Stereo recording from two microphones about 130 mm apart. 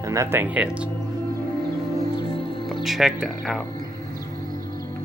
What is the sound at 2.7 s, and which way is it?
Speech, centre (ahead or behind).